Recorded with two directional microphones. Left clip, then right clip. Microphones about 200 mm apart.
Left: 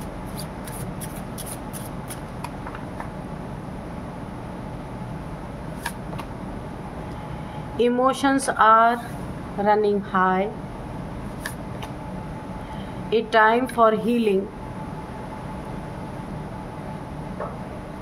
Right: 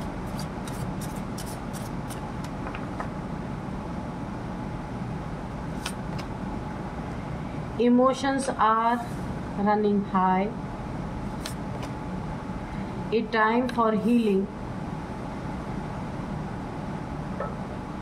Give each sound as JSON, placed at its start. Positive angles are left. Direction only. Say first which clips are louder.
{"t": 7.8, "sound": "a woman's voice", "louder": "left 2 dB", "side_deg": 35}
{"t": 13.1, "sound": "a woman's voice", "louder": "left 6 dB", "side_deg": 35}